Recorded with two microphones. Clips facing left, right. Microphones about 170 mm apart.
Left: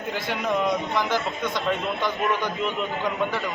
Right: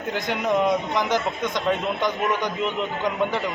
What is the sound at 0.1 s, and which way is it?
A man's voice, 15° right (ahead or behind).